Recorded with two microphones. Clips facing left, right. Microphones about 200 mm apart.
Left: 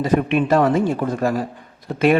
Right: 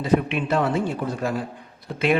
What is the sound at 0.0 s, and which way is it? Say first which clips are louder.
Speech: left 4 dB; 45° left (ahead or behind).